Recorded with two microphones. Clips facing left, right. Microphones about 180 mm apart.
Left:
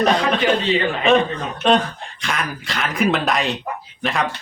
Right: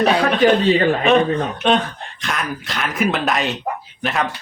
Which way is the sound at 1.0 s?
Centre (ahead or behind).